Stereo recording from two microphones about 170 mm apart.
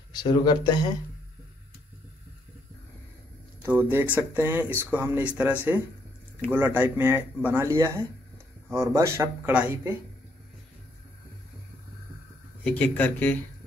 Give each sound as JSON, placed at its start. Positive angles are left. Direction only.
{"t": 0.1, "sound": "speech", "side_deg": 25}
{"t": 3.6, "sound": "speech", "side_deg": -10}
{"t": 12.6, "sound": "speech", "side_deg": 10}